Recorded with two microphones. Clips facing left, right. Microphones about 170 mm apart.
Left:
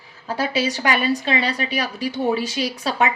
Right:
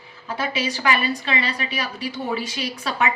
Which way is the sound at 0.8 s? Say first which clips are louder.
Even; 35° left (ahead or behind).